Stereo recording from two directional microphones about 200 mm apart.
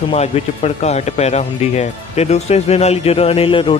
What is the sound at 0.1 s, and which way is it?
Speech, 35° left (ahead or behind).